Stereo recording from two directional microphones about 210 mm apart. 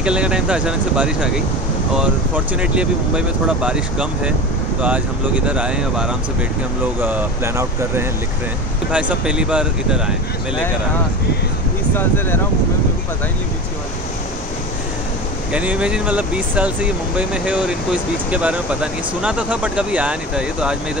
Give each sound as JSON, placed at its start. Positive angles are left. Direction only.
{"t": 0.0, "sound": "speech", "side_deg": -5}
{"t": 11.9, "sound": "speech", "side_deg": 10}
{"t": 15.5, "sound": "speech", "side_deg": -5}